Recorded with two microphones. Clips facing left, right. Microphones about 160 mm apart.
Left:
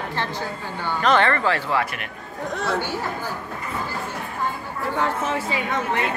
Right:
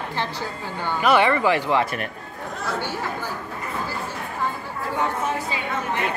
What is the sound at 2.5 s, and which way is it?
Speech, 75° left (ahead or behind).